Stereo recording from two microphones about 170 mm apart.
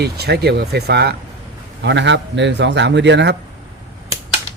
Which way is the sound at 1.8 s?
90° right.